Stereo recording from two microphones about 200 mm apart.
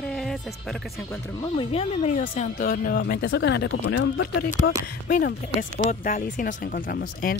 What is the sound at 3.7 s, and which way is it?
Speech, 70° left (ahead or behind).